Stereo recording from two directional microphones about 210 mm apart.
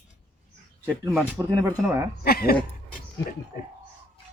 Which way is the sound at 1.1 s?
15° right (ahead or behind).